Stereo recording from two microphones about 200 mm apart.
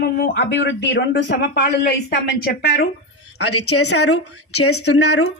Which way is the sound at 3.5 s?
90° left.